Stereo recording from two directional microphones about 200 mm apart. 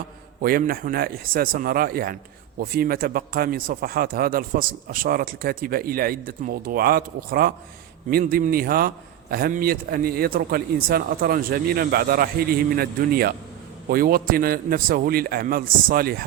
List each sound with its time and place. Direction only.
0.4 s a man's voice: 45° right (ahead or behind)